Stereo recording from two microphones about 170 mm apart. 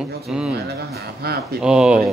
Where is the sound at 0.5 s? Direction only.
70° right (ahead or behind).